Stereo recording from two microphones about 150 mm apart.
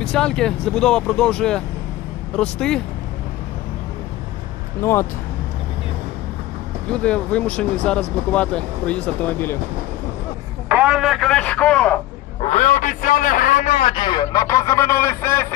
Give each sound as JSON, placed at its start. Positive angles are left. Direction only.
{"t": 0.0, "sound": "speech", "side_deg": 5}
{"t": 4.8, "sound": "speech", "side_deg": 15}
{"t": 6.9, "sound": "speech", "side_deg": 10}
{"t": 10.7, "sound": "speech", "side_deg": -5}
{"t": 12.4, "sound": "a man's voice", "side_deg": 55}
{"t": 13.8, "sound": "speech", "side_deg": 30}